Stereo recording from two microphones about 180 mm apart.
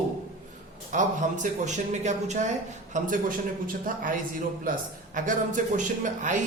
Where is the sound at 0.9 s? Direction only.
45° right (ahead or behind).